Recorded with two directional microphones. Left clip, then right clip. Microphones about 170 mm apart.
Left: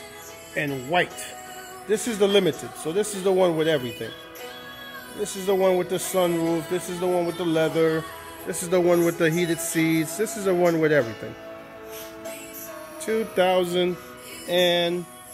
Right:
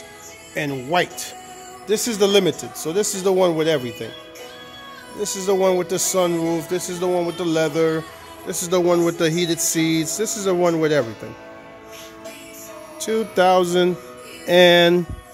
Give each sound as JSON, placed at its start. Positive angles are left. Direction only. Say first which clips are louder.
{"t": 0.6, "sound": "speech", "louder": "right 3 dB", "side_deg": -20}
{"t": 5.2, "sound": "speech", "louder": "right 3 dB", "side_deg": -15}
{"t": 13.1, "sound": "speech", "louder": "right 3 dB", "side_deg": -15}
{"t": 13.4, "sound": "music", "louder": "right 6 dB", "side_deg": -35}
{"t": 14.5, "sound": "speech", "louder": "right 8 dB", "side_deg": -70}